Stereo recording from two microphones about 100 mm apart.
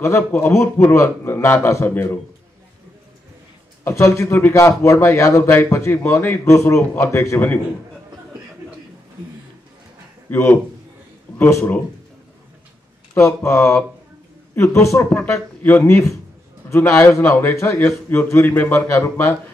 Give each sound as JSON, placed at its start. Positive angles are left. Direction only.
{"t": 0.0, "sound": "a man's voice", "side_deg": 25}
{"t": 3.8, "sound": "a man's voice", "side_deg": 30}
{"t": 10.3, "sound": "a man's voice", "side_deg": 20}
{"t": 13.1, "sound": "a man's voice", "side_deg": 25}
{"t": 15.1, "sound": "a man's voice", "side_deg": 15}